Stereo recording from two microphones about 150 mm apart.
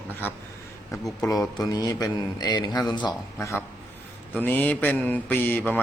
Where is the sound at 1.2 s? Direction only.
25° left (ahead or behind).